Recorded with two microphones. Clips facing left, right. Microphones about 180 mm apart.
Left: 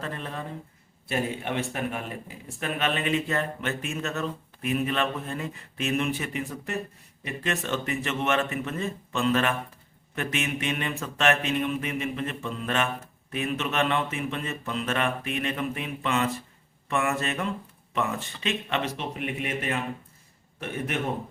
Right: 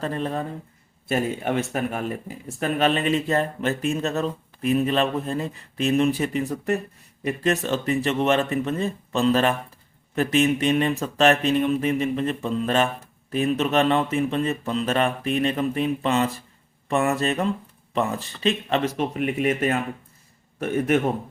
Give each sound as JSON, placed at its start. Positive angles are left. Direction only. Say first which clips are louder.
{"t": 0.0, "sound": "a man's voice", "louder": "right 8 dB", "side_deg": -35}